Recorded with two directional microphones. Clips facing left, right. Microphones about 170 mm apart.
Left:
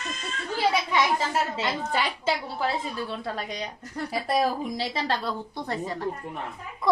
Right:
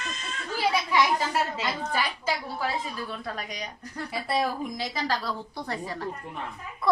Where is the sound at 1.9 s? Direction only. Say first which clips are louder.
Left 2 dB; 25° left (ahead or behind).